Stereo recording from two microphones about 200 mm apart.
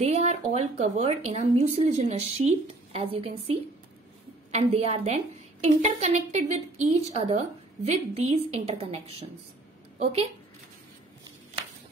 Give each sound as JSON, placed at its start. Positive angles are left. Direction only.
{"t": 0.0, "sound": "a woman's voice", "side_deg": -35}